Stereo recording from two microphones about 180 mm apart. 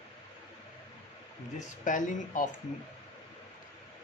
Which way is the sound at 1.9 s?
45° left (ahead or behind).